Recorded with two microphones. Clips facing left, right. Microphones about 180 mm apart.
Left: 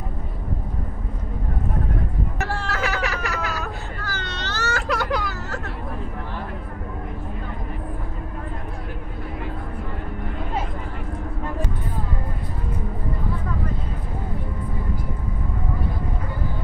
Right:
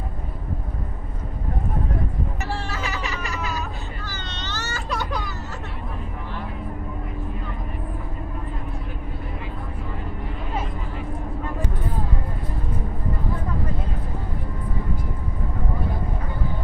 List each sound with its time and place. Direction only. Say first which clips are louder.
2.6 s cat: left 4 dB; 75° left (ahead or behind)